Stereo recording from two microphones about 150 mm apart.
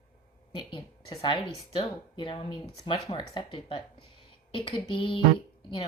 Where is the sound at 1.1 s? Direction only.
30° left (ahead or behind).